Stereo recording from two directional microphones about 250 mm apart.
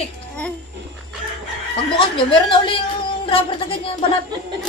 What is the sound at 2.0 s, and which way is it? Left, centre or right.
A woman's voice, left.